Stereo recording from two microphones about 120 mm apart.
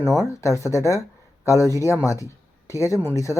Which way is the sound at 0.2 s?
25° left (ahead or behind).